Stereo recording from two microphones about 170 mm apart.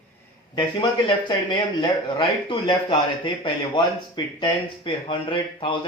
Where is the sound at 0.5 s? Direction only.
30° left (ahead or behind).